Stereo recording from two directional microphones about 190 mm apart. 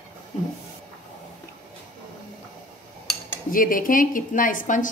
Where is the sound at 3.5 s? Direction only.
45° left (ahead or behind).